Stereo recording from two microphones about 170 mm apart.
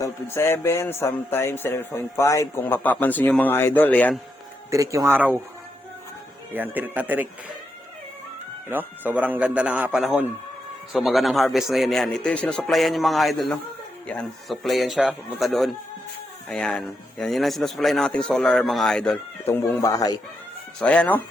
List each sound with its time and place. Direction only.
0.0 s speech: 15° left (ahead or behind)
4.7 s speech: 20° right (ahead or behind)
6.5 s speech: 10° right (ahead or behind)
8.7 s speech: 10° right (ahead or behind); by 20.1 s 20° left (ahead or behind)
20.7 s speech: 5° left (ahead or behind)